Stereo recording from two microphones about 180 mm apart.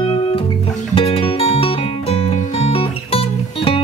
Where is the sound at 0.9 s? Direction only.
30° left (ahead or behind).